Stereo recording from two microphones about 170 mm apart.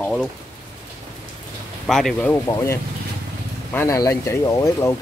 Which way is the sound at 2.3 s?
15° left (ahead or behind).